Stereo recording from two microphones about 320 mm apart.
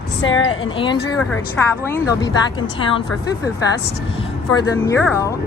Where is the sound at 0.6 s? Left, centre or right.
Centre.